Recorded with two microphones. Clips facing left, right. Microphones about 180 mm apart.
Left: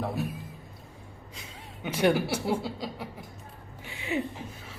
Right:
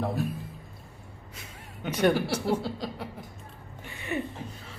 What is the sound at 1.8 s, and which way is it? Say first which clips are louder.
Speech: even; 5° left (ahead or behind).